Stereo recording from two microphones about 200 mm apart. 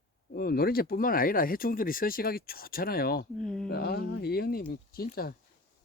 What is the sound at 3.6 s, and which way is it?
Speech, 50° left (ahead or behind).